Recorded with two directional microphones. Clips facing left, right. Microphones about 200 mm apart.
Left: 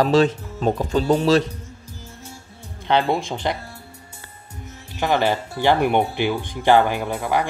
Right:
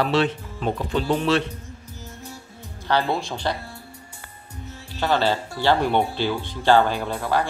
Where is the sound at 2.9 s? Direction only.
20° left (ahead or behind).